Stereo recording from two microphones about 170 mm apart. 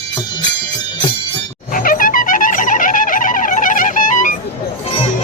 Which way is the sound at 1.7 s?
55° left (ahead or behind).